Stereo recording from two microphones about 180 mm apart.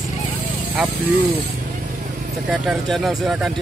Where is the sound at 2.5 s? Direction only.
5° right (ahead or behind).